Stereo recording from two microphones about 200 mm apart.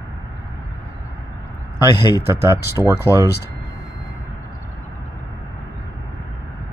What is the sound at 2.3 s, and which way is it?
Speech, 15° right (ahead or behind).